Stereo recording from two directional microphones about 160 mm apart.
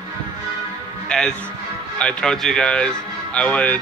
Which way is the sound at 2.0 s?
5° left (ahead or behind).